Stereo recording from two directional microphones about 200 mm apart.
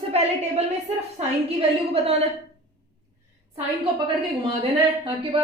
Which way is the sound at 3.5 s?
25° right (ahead or behind).